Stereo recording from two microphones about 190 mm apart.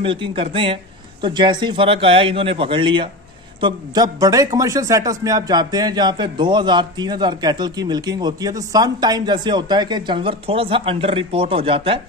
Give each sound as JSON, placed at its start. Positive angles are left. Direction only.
{"t": 0.0, "sound": "speech", "side_deg": -25}